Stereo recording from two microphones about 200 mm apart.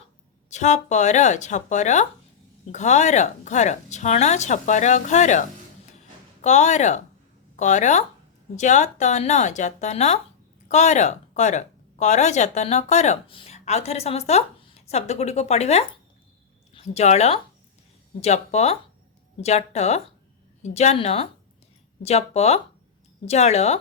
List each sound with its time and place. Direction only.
0.5 s speech: 35° left (ahead or behind)